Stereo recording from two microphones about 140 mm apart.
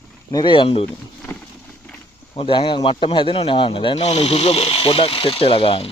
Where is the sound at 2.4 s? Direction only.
35° left (ahead or behind).